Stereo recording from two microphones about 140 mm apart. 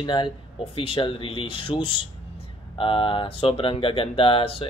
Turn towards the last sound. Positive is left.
turn(degrees=40)  # may be behind; listen again after turning